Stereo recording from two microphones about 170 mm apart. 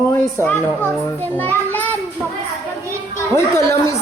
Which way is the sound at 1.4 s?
10° left (ahead or behind).